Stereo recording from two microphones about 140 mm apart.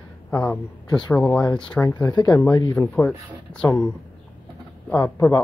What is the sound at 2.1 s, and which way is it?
Speech, 25° left (ahead or behind).